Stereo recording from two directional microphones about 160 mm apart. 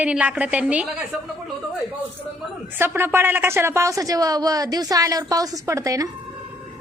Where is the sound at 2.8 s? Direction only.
15° right (ahead or behind).